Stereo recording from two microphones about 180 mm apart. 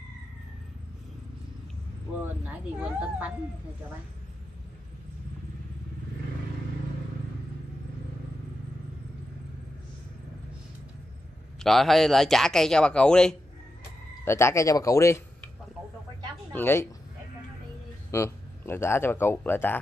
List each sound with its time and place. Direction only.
2.4 s a woman's voice: 5° right (ahead or behind)
11.6 s speech: centre (ahead or behind)
14.2 s speech: 15° left (ahead or behind)
16.5 s speech: 15° left (ahead or behind)
18.1 s speech: 15° left (ahead or behind)